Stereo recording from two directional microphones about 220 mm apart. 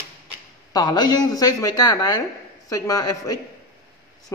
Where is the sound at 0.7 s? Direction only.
20° left (ahead or behind).